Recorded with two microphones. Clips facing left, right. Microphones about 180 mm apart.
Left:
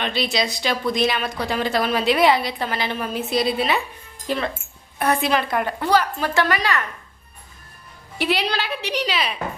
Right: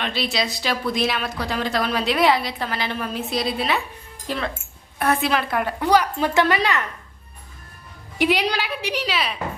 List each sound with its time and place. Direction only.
0.0 s speech: centre (ahead or behind)
5.8 s a woman's voice: 15° right (ahead or behind)
8.2 s a woman's voice: 15° right (ahead or behind)